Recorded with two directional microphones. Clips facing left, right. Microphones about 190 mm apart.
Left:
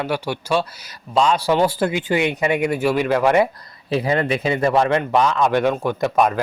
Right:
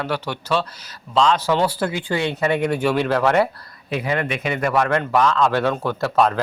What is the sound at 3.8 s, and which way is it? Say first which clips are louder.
A man's voice: left 4 dB; 30° left (ahead or behind).